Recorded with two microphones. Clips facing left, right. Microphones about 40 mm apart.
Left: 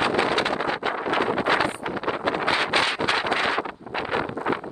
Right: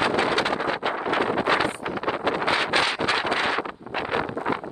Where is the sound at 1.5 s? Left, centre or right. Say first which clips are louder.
Even; left.